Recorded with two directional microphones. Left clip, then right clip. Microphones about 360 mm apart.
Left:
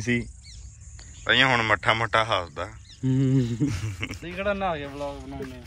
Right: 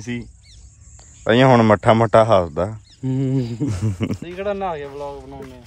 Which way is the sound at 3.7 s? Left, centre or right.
Right.